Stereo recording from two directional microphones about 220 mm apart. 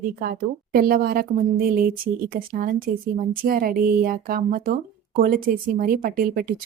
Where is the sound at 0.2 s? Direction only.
40° right (ahead or behind).